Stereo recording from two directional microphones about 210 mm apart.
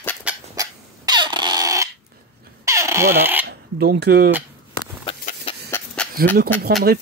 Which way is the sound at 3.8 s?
50° right (ahead or behind).